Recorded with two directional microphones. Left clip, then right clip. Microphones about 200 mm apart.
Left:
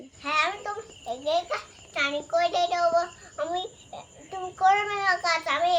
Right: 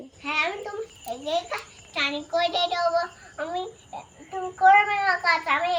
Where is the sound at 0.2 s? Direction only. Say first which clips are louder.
Even; 25° left (ahead or behind).